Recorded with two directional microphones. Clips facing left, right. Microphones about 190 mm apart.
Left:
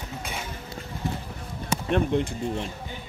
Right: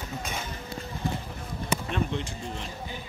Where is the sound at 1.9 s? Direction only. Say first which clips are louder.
Left 11 dB; 55° left (ahead or behind).